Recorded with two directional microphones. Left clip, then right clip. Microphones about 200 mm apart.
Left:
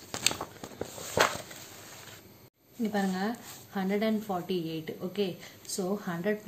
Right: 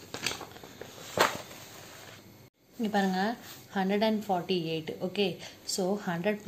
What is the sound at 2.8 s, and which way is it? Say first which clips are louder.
A woman's voice: right 3 dB; 15° right (ahead or behind).